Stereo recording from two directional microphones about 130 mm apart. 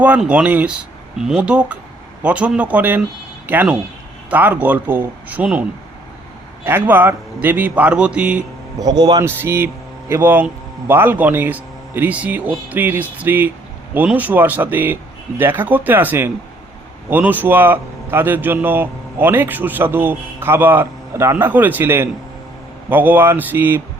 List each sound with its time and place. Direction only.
0.0 s a man's voice: 10° right (ahead or behind)
6.7 s a man's voice: 15° right (ahead or behind)
8.8 s a man's voice: 35° right (ahead or behind)
9.2 s a man's voice: 20° right (ahead or behind)